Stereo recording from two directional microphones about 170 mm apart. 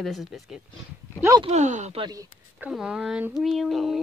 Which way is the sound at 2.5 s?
5° right (ahead or behind).